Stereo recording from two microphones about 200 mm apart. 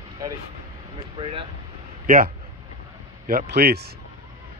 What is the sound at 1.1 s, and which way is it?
Speech, 25° right (ahead or behind).